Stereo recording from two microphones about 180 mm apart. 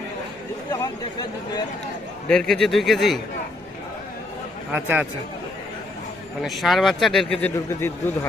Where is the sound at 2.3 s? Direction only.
5° left (ahead or behind).